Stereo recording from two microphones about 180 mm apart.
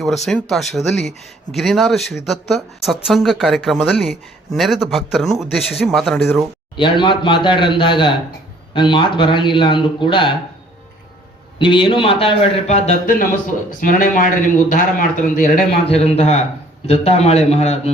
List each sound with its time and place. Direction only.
0.3 s speech: centre (ahead or behind)
6.7 s a man's voice: 25° left (ahead or behind)
11.6 s a man's voice: 25° left (ahead or behind)
13.8 s a man's voice: 50° left (ahead or behind)
15.9 s a man's voice: 35° left (ahead or behind)